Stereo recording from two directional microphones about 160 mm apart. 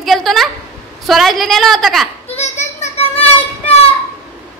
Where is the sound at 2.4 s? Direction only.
45° left (ahead or behind).